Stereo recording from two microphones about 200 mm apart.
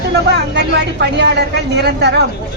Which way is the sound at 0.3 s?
55° right (ahead or behind).